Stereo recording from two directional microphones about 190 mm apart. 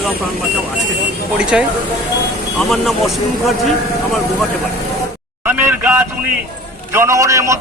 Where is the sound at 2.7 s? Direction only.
Centre (ahead or behind).